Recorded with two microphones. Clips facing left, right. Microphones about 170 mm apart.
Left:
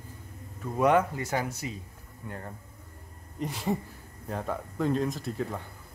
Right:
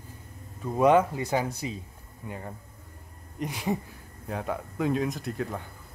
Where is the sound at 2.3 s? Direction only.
5° right (ahead or behind).